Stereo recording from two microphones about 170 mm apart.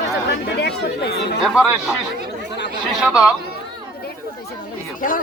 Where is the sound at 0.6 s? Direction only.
75° left (ahead or behind).